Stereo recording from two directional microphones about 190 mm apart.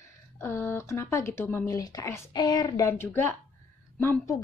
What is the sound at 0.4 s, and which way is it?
A woman's voice, 10° left (ahead or behind).